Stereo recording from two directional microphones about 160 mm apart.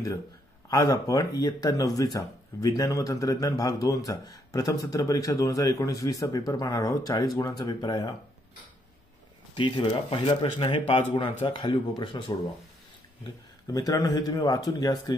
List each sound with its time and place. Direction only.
0.7 s speech: 20° left (ahead or behind)
9.6 s speech: 30° left (ahead or behind)
13.7 s speech: 25° left (ahead or behind)